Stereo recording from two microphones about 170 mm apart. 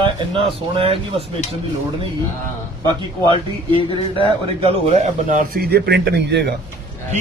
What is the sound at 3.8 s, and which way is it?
Speech, 30° left (ahead or behind).